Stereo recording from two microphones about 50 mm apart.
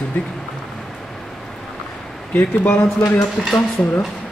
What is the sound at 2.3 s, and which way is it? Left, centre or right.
Speech, left.